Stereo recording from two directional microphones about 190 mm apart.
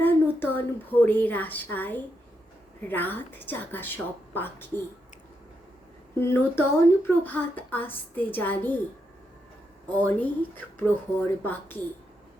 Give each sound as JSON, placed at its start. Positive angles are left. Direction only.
{"t": 0.0, "sound": "a woman's voice", "side_deg": 10}
{"t": 6.1, "sound": "speech", "side_deg": 15}
{"t": 9.9, "sound": "speech", "side_deg": 10}